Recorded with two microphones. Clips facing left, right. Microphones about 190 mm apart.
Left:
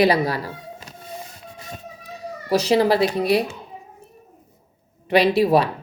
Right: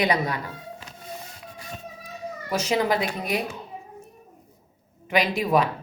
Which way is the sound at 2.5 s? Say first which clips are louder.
Left 6 dB; 35° left (ahead or behind).